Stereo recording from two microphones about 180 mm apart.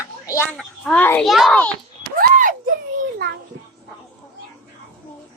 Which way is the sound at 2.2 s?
50° right (ahead or behind).